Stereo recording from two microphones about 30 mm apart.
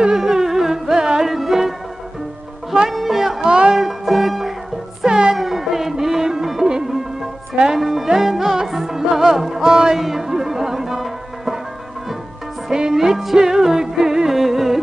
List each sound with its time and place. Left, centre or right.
0.0 s carnatic music: centre
1.2 s music: centre
2.9 s music: centre
3.4 s music: right
3.7 s music: centre
5.0 s music: right
5.3 s music: centre
7.8 s music: centre
9.7 s music: right
9.9 s music: centre
12.6 s music: right